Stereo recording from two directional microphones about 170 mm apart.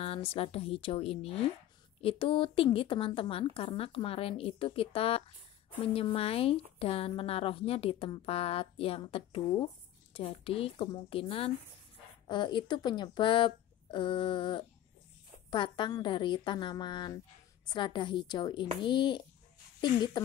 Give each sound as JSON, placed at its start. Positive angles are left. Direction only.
{"t": 0.0, "sound": "a woman's voice", "side_deg": 35}